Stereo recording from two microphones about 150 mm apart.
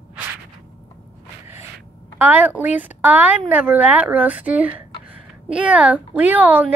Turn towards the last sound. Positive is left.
turn(degrees=-10)  # may be behind; listen again after turning